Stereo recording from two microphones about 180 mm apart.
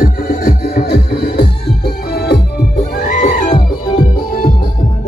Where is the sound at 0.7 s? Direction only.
60° left (ahead or behind).